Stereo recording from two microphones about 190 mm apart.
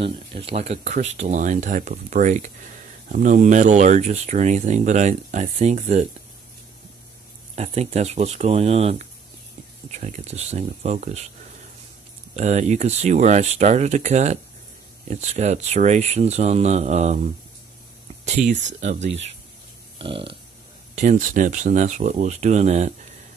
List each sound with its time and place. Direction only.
0.0 s speech: 30° right (ahead or behind)
7.5 s speech: 35° right (ahead or behind)
12.4 s speech: 35° right (ahead or behind)
20.0 s a sound: 30° right (ahead or behind)
20.9 s speech: 40° right (ahead or behind)